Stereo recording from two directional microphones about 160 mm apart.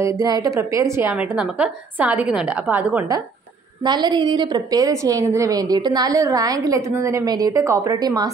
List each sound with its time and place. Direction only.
0.0 s a woman's voice: 20° right (ahead or behind)
3.8 s a woman's voice: 25° right (ahead or behind)